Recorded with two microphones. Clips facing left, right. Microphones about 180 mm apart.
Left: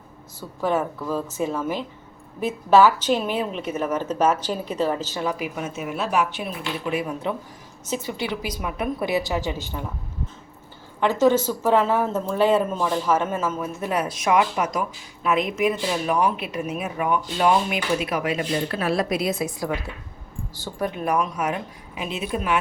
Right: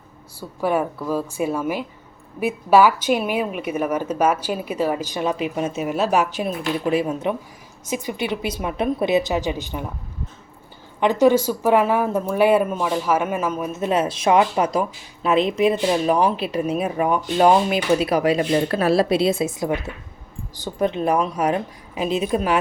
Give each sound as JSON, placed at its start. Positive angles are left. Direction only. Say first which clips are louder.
{"t": 0.3, "sound": "a woman's voice", "louder": "right 2 dB", "side_deg": -10}
{"t": 7.0, "sound": "speech", "louder": "right 4 dB", "side_deg": -20}
{"t": 11.0, "sound": "speech", "louder": "right 3 dB", "side_deg": -15}